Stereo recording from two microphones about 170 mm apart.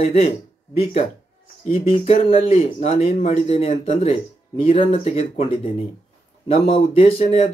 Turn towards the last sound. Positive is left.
turn(degrees=35)  # may be behind; listen again after turning